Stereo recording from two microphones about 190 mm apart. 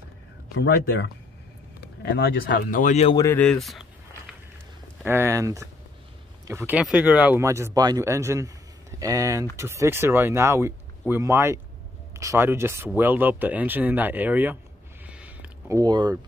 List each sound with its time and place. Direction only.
0.6 s speech: 60° left (ahead or behind); by 3.2 s 35° left (ahead or behind)
3.2 s speech: 10° left (ahead or behind)
5.0 s speech: 15° right (ahead or behind)
15.0 s a sound: 5° right (ahead or behind)
15.8 s speech: 20° right (ahead or behind)